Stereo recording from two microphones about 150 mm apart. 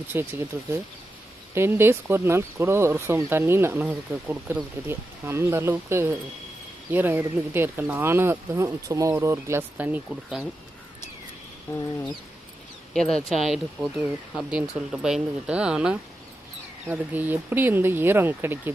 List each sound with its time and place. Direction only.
0.1 s speech: 15° right (ahead or behind)
1.5 s speech: 15° right (ahead or behind)
11.7 s a sound: 15° left (ahead or behind)
12.9 s speech: 5° left (ahead or behind); by 18.7 s 15° right (ahead or behind)